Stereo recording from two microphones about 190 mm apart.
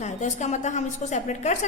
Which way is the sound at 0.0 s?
40° left (ahead or behind).